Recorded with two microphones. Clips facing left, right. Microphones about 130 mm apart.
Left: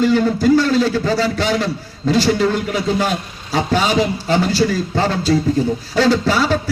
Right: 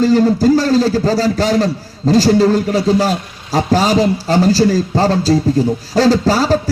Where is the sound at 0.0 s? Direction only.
35° right (ahead or behind).